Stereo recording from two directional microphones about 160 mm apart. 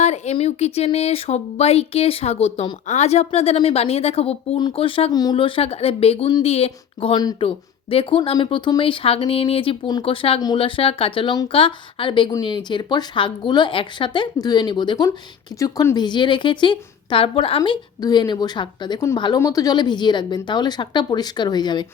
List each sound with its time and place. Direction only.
0.0 s a woman's voice: 45° left (ahead or behind)
17.6 s a woman's voice: 25° left (ahead or behind)